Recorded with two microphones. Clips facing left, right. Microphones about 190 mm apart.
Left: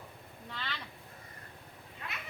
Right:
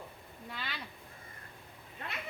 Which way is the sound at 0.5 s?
10° right (ahead or behind).